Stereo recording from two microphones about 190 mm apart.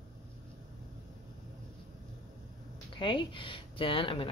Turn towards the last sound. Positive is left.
turn(degrees=30)  # may be behind; listen again after turning